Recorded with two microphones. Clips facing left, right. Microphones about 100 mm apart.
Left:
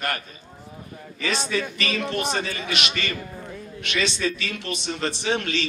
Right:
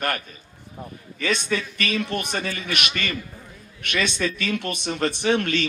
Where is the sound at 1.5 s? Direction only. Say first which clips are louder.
Left 2 dB; 45° right (ahead or behind).